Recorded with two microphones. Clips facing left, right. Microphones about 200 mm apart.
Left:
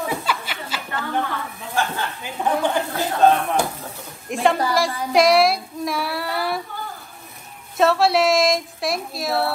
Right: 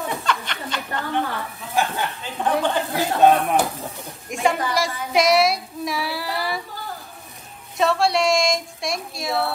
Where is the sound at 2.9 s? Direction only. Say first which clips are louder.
Right 2 dB; 15° right (ahead or behind).